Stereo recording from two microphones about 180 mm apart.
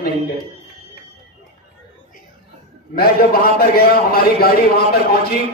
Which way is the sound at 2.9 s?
55° left (ahead or behind).